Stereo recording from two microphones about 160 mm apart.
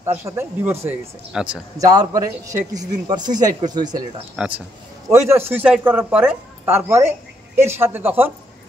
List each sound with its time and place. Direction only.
0.0 s speech: 15° right (ahead or behind)
1.8 s a man's voice: 20° right (ahead or behind)
4.4 s speech: 10° right (ahead or behind)